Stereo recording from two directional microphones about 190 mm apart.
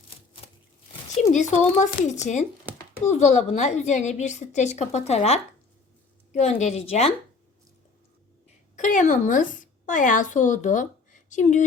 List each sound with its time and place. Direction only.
1.3 s a woman's voice: 40° left (ahead or behind)
8.7 s a woman's voice: 40° left (ahead or behind)